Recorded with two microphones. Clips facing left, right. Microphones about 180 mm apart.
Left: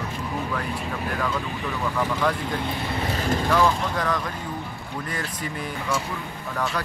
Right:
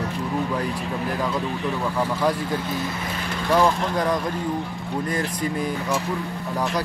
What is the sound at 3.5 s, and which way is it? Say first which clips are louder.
Speech: right 4 dB; 20° right (ahead or behind).